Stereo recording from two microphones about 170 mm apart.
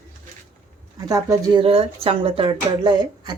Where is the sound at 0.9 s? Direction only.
20° right (ahead or behind).